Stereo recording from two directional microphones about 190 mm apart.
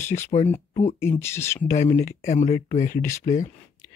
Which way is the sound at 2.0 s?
40° left (ahead or behind).